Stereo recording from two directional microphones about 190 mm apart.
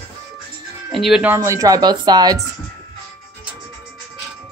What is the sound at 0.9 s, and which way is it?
A woman's voice, centre (ahead or behind).